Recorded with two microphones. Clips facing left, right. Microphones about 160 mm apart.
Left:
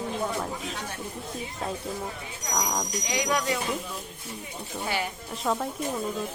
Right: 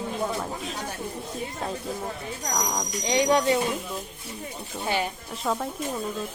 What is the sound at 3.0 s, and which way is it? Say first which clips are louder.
Speech: right 7 dB; 30° right (ahead or behind).